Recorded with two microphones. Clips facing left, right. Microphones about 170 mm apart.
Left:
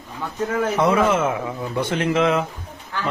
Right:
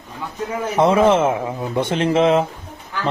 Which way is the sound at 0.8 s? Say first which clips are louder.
Right 5 dB; 25° right (ahead or behind).